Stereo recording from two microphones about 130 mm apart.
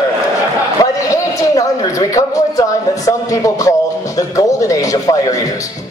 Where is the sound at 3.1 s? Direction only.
25° left (ahead or behind).